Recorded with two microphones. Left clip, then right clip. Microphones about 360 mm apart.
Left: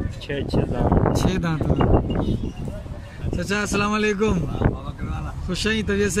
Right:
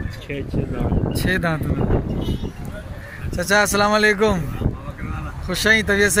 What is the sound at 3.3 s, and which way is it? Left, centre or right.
Speech, centre.